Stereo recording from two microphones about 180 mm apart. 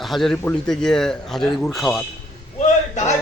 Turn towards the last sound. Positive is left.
turn(degrees=40)  # may be behind; listen again after turning